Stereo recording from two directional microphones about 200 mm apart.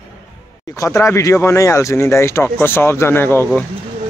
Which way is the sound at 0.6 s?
15° left (ahead or behind).